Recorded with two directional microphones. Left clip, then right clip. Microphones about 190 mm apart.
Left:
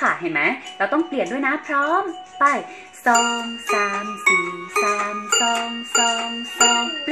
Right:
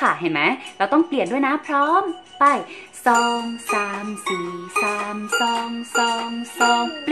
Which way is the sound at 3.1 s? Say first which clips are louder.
Even; 15° right (ahead or behind).